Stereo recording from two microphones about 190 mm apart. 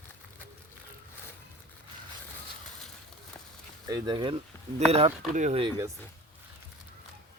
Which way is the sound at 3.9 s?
20° right (ahead or behind).